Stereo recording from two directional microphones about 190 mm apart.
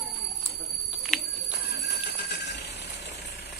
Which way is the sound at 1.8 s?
60° left (ahead or behind).